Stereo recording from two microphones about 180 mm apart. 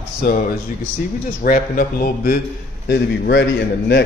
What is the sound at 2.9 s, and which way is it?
Speech, 70° left (ahead or behind).